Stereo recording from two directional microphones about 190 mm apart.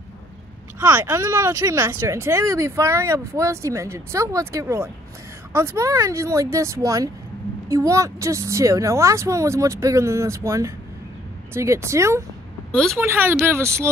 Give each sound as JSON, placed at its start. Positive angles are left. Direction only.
{"t": 0.7, "sound": "speech", "side_deg": -10}